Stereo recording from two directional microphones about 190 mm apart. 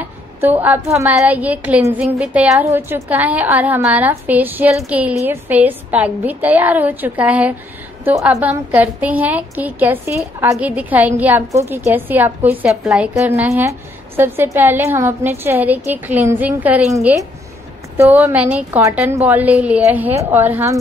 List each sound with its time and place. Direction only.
0.0 s a woman's voice: 10° right (ahead or behind)
13.1 s a woman's voice: 15° right (ahead or behind)